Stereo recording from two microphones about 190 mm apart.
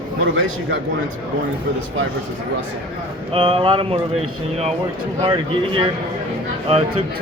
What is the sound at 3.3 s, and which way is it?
Speech, 30° right (ahead or behind).